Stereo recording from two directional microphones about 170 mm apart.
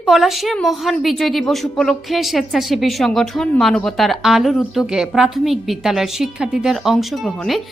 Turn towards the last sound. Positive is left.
turn(degrees=0)  # may be behind; listen again after turning